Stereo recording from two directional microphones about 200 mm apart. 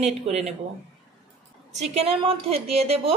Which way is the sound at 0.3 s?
35° right (ahead or behind).